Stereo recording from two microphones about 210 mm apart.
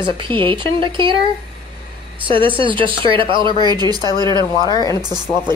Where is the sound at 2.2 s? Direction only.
25° right (ahead or behind).